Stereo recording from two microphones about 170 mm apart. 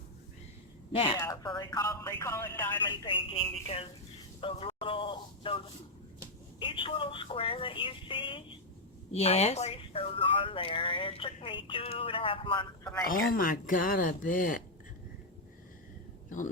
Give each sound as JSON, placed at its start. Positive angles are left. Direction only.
{"t": 0.9, "sound": "speech", "side_deg": 30}
{"t": 1.2, "sound": "speech", "side_deg": 20}
{"t": 3.0, "sound": "speech", "side_deg": 30}
{"t": 4.4, "sound": "a sound", "side_deg": 30}
{"t": 6.6, "sound": "speech", "side_deg": 30}
{"t": 13.1, "sound": "speech", "side_deg": 55}